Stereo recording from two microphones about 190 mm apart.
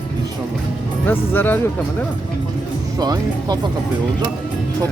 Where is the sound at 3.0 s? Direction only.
20° right (ahead or behind).